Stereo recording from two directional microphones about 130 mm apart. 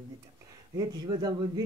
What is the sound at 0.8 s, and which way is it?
Speech, 30° right (ahead or behind).